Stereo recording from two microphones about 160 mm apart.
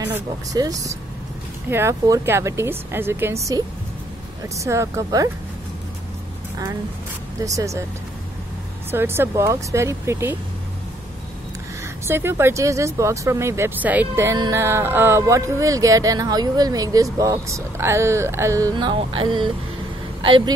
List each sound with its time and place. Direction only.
0.1 s a woman's voice: 20° right (ahead or behind)
4.6 s speech: 20° right (ahead or behind)
7.4 s speech: 20° right (ahead or behind)
8.9 s a woman's voice: 15° right (ahead or behind)
12.1 s speech: 15° right (ahead or behind); by 20.5 s 30° right (ahead or behind)